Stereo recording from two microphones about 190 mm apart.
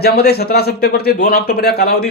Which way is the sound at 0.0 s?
55° left (ahead or behind).